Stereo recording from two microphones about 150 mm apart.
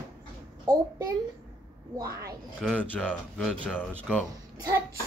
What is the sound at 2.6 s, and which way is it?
Speech, 5° left (ahead or behind).